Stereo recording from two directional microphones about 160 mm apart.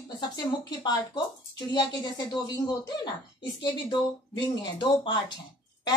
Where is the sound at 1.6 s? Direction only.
25° left (ahead or behind).